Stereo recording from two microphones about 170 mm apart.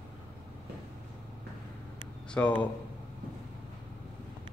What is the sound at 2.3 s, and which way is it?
Speech, 10° left (ahead or behind).